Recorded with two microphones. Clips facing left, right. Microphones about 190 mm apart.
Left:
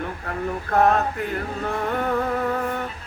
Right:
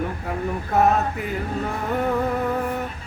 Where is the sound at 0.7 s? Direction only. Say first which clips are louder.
Even; 5° right (ahead or behind).